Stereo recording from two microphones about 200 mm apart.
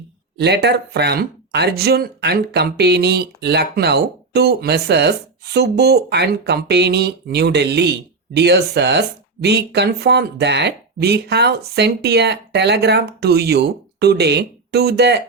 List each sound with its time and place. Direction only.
0.3 s speech: 55° right (ahead or behind)